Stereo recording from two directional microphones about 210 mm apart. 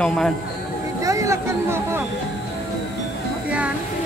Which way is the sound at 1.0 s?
15° right (ahead or behind).